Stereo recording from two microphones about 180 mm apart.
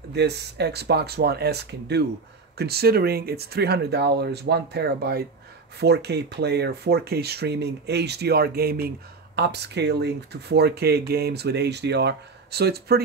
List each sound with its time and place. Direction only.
0.1 s speech: 65° right (ahead or behind)